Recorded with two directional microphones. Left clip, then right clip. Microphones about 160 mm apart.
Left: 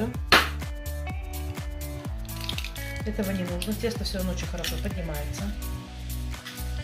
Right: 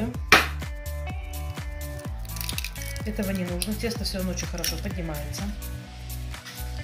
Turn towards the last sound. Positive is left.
turn(degrees=0)  # may be behind; listen again after turning